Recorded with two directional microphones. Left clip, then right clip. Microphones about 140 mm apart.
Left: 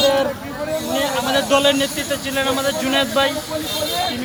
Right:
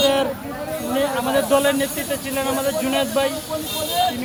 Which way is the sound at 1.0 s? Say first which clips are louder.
Even; 25° right (ahead or behind).